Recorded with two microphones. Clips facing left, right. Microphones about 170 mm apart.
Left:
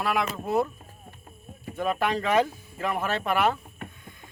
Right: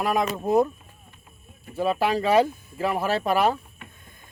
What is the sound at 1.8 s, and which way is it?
Speech, 30° right (ahead or behind).